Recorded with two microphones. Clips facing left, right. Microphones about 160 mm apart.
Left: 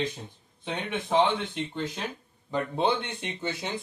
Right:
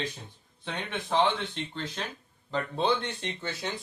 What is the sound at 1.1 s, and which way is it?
Speech, 10° left (ahead or behind).